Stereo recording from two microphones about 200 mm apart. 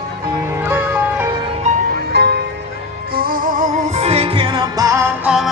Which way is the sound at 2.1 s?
55° right (ahead or behind).